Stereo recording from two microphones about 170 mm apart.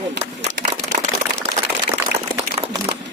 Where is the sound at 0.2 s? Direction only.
45° right (ahead or behind).